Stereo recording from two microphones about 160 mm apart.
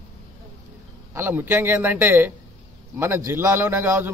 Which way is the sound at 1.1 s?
15° right (ahead or behind).